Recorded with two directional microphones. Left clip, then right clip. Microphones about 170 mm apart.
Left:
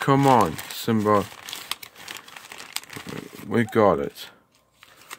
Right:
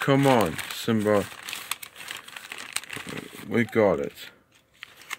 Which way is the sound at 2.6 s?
20° left (ahead or behind).